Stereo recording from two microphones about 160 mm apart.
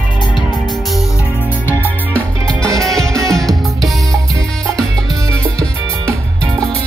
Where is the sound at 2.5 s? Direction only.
20° right (ahead or behind).